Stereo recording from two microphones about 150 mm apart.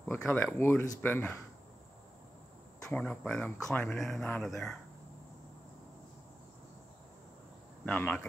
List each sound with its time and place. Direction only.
0.0 s speech: 15° left (ahead or behind)
2.9 s speech: 10° left (ahead or behind)
7.8 s speech: 10° left (ahead or behind)